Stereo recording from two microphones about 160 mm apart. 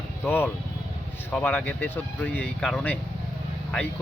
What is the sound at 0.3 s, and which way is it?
Speech, 15° left (ahead or behind).